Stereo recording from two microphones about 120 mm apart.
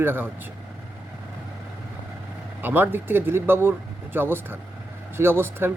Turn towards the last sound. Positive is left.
turn(degrees=-20)  # may be behind; listen again after turning